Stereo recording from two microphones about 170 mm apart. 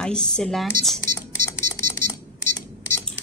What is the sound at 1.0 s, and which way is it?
Music, 15° left (ahead or behind).